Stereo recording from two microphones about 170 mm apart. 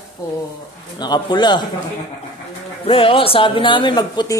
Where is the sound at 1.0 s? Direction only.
25° left (ahead or behind).